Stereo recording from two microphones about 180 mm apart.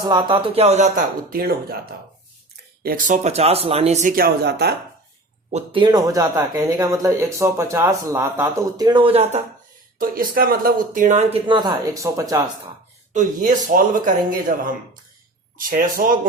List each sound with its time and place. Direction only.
0.0 s speech: 25° right (ahead or behind); by 1.5 s 55° right (ahead or behind)
2.8 s speech: 50° right (ahead or behind)
4.1 s speech: 60° right (ahead or behind)
5.5 s speech: 40° right (ahead or behind)
5.8 s speech: 20° right (ahead or behind)
10.0 s speech: 50° right (ahead or behind); by 12.4 s 20° right (ahead or behind)
13.1 s speech: 45° right (ahead or behind)
15.5 s speech: 50° right (ahead or behind)